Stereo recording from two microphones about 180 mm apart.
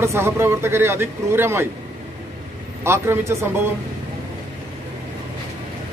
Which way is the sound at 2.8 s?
15° right (ahead or behind).